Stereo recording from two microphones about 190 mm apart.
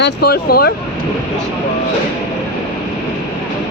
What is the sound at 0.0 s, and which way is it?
Speech, 55° left (ahead or behind).